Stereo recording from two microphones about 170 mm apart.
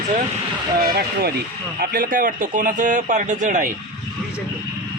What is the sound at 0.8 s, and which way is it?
Speech, 65° right (ahead or behind).